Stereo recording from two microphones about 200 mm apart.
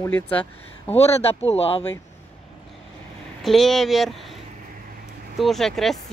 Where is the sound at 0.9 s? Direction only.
30° left (ahead or behind).